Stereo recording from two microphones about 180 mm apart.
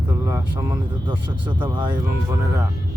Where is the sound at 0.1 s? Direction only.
15° right (ahead or behind).